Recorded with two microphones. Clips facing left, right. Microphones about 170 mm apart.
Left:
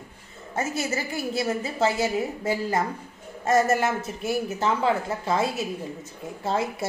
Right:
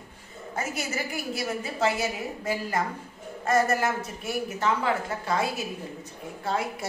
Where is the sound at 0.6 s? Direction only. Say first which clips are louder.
Left 4 dB; 25° left (ahead or behind).